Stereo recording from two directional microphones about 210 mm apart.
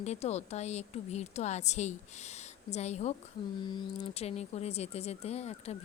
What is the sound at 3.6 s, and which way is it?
Speech, 20° left (ahead or behind).